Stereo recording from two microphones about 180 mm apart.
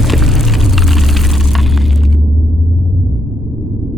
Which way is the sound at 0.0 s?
Centre (ahead or behind).